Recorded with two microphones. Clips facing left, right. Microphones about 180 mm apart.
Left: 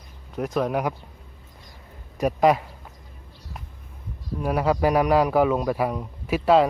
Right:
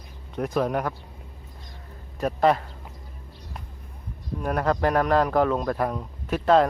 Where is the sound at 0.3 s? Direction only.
Centre (ahead or behind).